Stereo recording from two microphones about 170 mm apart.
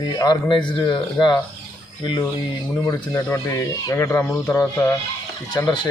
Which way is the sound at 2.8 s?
20° left (ahead or behind).